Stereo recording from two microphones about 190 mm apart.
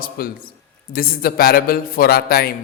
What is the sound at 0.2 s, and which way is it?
A man's voice, 50° left (ahead or behind).